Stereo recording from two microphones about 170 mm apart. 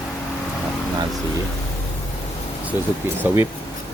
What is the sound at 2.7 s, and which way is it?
Speech, 10° right (ahead or behind).